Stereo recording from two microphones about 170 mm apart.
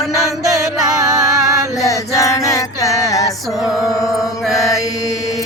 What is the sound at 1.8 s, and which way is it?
Music, 20° left (ahead or behind).